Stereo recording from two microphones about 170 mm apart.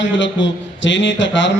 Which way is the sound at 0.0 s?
90° left.